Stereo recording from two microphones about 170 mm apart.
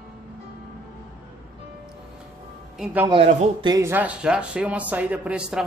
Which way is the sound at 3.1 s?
35° right (ahead or behind).